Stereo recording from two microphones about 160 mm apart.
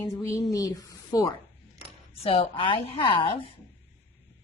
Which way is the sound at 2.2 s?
35° left (ahead or behind).